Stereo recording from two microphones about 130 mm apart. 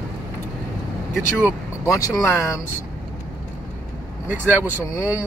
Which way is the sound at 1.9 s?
25° left (ahead or behind).